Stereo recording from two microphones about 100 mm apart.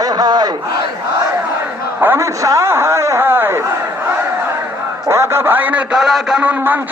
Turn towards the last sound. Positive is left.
turn(degrees=-15)  # may be behind; listen again after turning